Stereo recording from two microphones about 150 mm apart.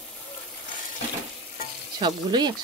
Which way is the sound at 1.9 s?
30° right (ahead or behind).